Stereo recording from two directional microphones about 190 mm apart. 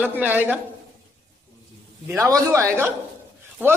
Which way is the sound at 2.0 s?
15° right (ahead or behind).